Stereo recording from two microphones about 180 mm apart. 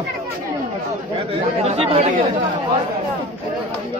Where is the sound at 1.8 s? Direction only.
35° right (ahead or behind).